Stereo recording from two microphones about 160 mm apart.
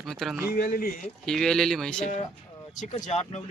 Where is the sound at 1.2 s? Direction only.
5° left (ahead or behind).